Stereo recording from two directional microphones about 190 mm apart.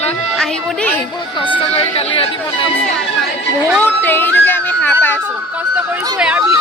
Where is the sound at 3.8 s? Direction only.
10° left (ahead or behind).